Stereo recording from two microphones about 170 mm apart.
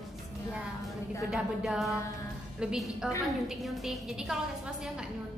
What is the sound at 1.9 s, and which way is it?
Music, 20° left (ahead or behind).